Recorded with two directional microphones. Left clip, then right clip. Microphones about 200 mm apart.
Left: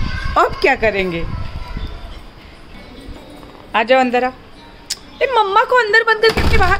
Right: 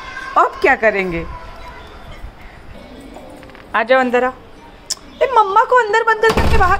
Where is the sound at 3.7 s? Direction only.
5° left (ahead or behind).